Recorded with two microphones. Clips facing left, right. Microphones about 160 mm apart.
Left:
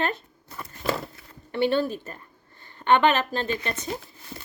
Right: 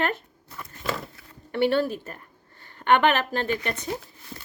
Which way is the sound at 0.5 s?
35° left (ahead or behind).